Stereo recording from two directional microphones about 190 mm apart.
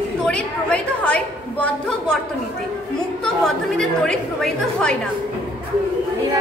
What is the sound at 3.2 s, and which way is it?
A woman's voice, 5° left (ahead or behind).